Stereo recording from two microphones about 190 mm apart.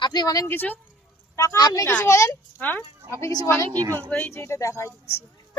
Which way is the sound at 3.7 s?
20° right (ahead or behind).